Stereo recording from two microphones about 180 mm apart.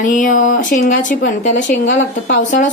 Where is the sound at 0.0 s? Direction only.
45° left (ahead or behind).